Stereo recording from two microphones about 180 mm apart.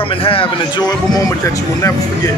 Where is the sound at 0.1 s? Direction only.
30° left (ahead or behind).